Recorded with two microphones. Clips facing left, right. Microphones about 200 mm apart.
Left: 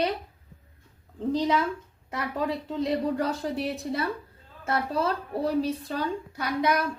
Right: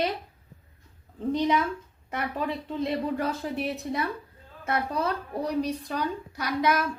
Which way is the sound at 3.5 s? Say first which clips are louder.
Even; 20° right (ahead or behind).